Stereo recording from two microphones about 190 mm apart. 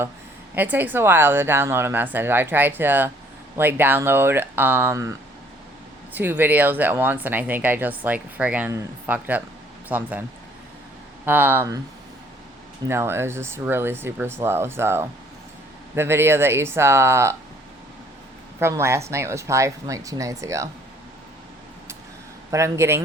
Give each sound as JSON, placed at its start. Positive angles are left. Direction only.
{"t": 0.5, "sound": "speech", "side_deg": -10}
{"t": 6.1, "sound": "speech", "side_deg": -10}
{"t": 11.3, "sound": "speech", "side_deg": -10}
{"t": 12.9, "sound": "speech", "side_deg": -15}
{"t": 18.6, "sound": "speech", "side_deg": -15}
{"t": 22.5, "sound": "speech", "side_deg": -15}